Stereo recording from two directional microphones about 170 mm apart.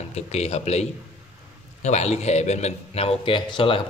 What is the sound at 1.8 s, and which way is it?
Speech, 40° left (ahead or behind).